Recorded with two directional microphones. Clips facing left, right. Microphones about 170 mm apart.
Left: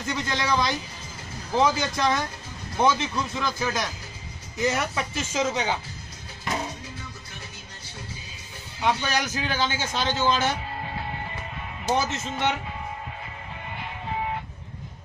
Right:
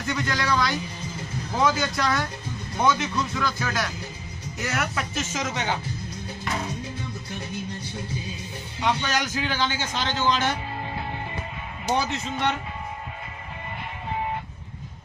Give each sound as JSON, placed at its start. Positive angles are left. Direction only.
{"t": 0.0, "sound": "a man's voice", "side_deg": 25}
{"t": 8.8, "sound": "a man's voice", "side_deg": 10}
{"t": 11.9, "sound": "a man's voice", "side_deg": 0}